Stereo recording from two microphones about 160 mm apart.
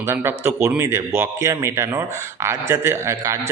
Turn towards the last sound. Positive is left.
turn(degrees=-20)  # may be behind; listen again after turning